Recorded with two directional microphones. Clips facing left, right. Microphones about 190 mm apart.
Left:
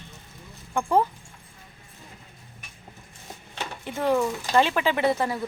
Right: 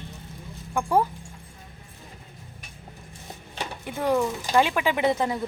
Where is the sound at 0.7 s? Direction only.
10° right (ahead or behind).